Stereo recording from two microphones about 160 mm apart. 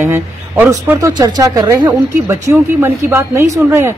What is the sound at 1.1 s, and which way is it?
Speech, 25° right (ahead or behind).